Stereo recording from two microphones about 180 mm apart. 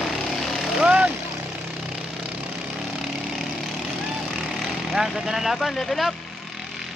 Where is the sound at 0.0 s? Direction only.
Centre (ahead or behind).